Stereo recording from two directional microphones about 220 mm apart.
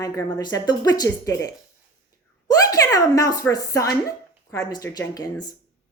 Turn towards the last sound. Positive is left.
turn(degrees=15)  # may be behind; listen again after turning